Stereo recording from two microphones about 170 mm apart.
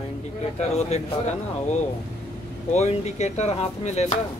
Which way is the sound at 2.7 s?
40° left (ahead or behind).